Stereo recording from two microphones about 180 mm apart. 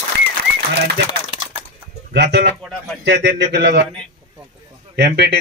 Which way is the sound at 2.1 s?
70° right (ahead or behind).